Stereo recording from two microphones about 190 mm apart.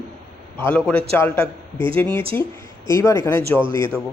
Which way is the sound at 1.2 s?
10° left (ahead or behind).